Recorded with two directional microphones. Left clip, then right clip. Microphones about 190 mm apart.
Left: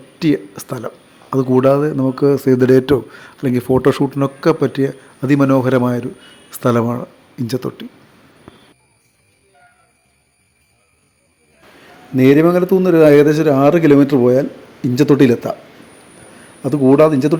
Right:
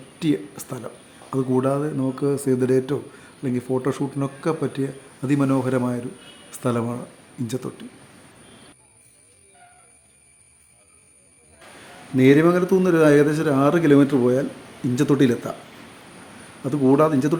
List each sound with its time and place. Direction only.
0.2 s speech: 25° left (ahead or behind)
12.1 s a man's voice: 25° left (ahead or behind)
16.6 s a man's voice: 20° left (ahead or behind)